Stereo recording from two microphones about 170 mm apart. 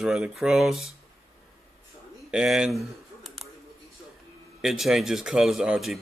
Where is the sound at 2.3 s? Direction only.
5° right (ahead or behind).